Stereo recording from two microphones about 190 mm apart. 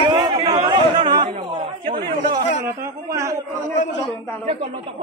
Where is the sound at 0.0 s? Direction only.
25° right (ahead or behind).